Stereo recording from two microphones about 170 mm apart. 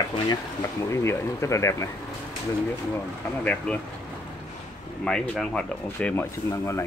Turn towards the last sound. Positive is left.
turn(degrees=15)  # may be behind; listen again after turning